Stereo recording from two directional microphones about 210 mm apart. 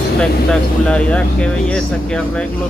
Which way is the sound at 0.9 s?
5° left (ahead or behind).